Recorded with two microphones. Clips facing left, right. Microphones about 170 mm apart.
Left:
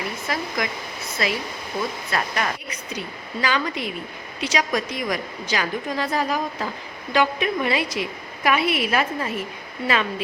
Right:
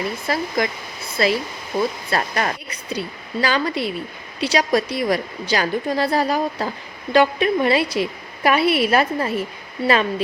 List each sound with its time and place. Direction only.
0.3 s a woman's voice: 30° right (ahead or behind)